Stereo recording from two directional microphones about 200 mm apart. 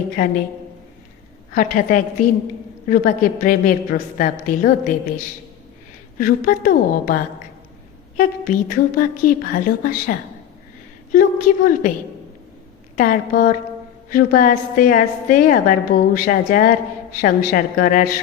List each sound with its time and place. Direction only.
1.5 s a woman's voice: 40° left (ahead or behind)
13.0 s a woman's voice: 45° left (ahead or behind)